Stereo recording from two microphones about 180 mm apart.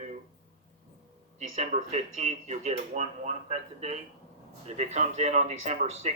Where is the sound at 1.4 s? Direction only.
40° right (ahead or behind).